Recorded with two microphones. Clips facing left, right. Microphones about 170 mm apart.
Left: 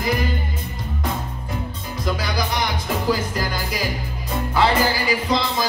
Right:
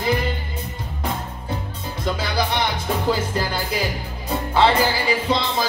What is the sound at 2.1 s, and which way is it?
Music, 30° right (ahead or behind).